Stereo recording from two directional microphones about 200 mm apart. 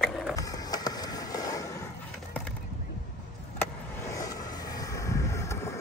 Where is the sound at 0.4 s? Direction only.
20° left (ahead or behind).